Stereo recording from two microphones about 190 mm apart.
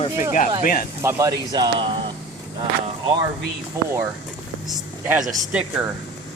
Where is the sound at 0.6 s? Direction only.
45° left (ahead or behind).